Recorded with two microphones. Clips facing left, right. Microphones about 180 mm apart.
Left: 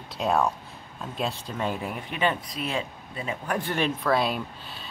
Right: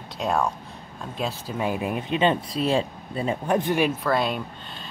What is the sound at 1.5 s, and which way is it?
Speech, 10° right (ahead or behind).